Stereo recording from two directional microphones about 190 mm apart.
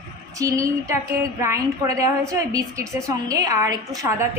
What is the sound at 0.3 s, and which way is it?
A woman's voice, 15° right (ahead or behind).